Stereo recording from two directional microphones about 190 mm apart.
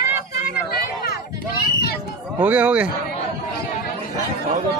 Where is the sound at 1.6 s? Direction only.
55° left (ahead or behind).